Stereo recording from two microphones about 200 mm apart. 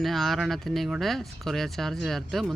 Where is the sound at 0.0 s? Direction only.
Centre (ahead or behind).